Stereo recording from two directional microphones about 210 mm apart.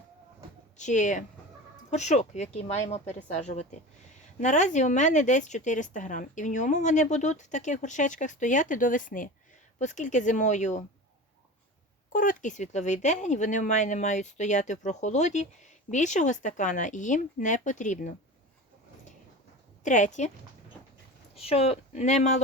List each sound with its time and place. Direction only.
0.8 s a woman's voice: 35° left (ahead or behind)
12.1 s a woman's voice: 40° left (ahead or behind)
19.8 s a woman's voice: 35° left (ahead or behind)
21.3 s a woman's voice: 30° left (ahead or behind)